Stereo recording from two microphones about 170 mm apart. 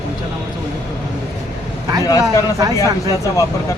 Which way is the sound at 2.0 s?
20° left (ahead or behind).